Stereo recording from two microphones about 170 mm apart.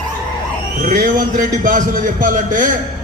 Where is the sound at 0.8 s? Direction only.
55° right (ahead or behind).